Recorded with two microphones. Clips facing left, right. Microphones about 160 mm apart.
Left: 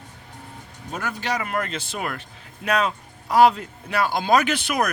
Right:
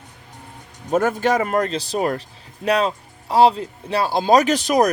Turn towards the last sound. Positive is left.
turn(degrees=-40)  # may be behind; listen again after turning